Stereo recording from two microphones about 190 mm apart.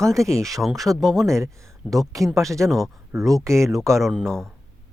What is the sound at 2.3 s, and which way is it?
Speech, centre (ahead or behind).